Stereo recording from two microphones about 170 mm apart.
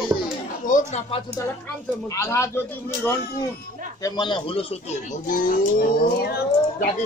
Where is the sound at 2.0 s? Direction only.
15° left (ahead or behind).